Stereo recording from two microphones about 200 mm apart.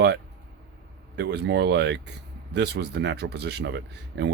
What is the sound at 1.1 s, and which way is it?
Speech, 55° right (ahead or behind).